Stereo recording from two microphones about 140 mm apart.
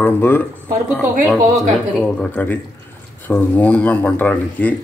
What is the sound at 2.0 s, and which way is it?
Speech, 10° left (ahead or behind).